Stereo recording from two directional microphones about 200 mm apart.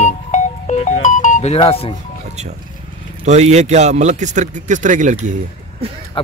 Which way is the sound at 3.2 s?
35° right (ahead or behind).